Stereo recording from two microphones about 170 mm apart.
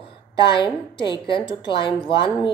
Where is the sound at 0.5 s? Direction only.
30° left (ahead or behind).